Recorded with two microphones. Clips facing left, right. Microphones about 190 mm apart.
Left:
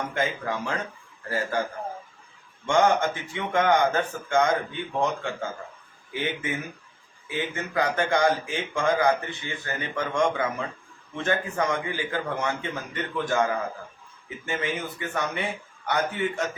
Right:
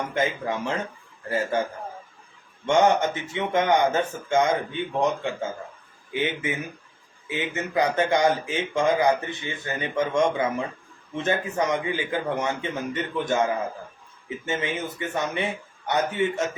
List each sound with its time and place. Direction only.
0.1 s speech: 20° right (ahead or behind)
2.6 s speech: 20° right (ahead or behind)